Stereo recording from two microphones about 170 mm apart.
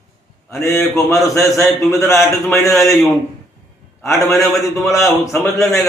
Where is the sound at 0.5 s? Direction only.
15° left (ahead or behind).